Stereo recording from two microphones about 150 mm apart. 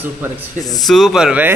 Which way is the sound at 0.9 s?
Centre (ahead or behind).